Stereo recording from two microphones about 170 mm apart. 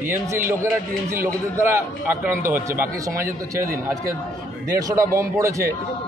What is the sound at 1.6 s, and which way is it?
A man's voice, 10° right (ahead or behind).